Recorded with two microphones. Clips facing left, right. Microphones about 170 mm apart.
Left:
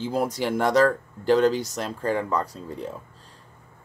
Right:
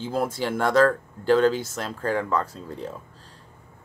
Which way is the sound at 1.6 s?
10° left (ahead or behind).